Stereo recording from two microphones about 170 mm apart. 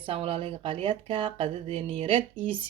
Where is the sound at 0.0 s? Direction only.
35° right (ahead or behind).